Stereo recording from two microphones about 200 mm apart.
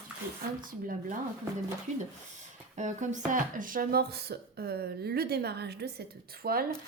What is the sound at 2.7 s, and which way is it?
Speech, 35° right (ahead or behind).